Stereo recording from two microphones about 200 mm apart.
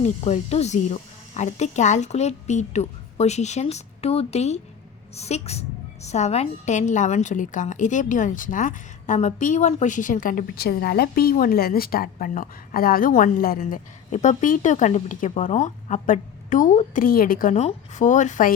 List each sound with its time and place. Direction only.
0.0 s a woman's voice: 30° left (ahead or behind)